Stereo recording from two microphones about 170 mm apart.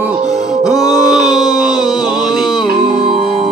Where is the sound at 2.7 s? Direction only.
60° right (ahead or behind).